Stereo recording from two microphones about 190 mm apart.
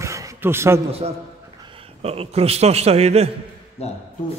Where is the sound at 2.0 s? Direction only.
30° right (ahead or behind).